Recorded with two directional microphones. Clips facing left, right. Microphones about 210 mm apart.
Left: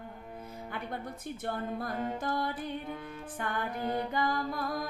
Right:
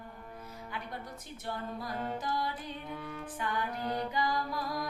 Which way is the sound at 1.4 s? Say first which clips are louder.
Left 3 dB; 55° left (ahead or behind).